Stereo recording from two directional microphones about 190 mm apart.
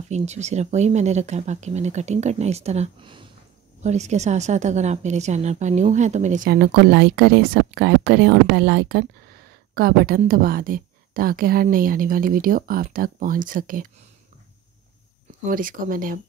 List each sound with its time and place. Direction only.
0.1 s speech: 35° right (ahead or behind)
3.8 s speech: 35° right (ahead or behind)
6.5 s a woman's voice: 55° right (ahead or behind)
15.4 s a woman's voice: 45° right (ahead or behind)